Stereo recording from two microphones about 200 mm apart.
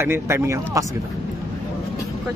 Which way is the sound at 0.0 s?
10° right (ahead or behind).